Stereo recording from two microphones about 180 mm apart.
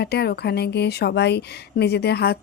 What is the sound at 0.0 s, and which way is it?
A woman's voice, 65° left (ahead or behind).